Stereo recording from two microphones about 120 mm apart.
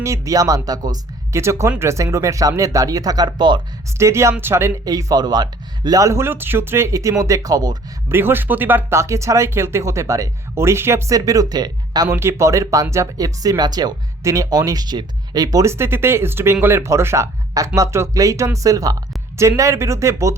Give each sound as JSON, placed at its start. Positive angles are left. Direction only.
{"t": 0.0, "sound": "speech", "side_deg": -25}
{"t": 3.9, "sound": "speech", "side_deg": -25}
{"t": 4.9, "sound": "speech", "side_deg": -30}
{"t": 8.1, "sound": "speech", "side_deg": -20}
{"t": 12.0, "sound": "speech", "side_deg": -20}